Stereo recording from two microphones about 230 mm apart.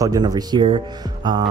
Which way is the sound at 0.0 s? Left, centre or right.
Centre.